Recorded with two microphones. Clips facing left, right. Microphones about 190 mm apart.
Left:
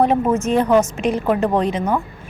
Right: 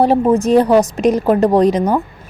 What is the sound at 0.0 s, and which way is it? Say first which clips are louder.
A woman's voice: right 4 dB; 35° right (ahead or behind).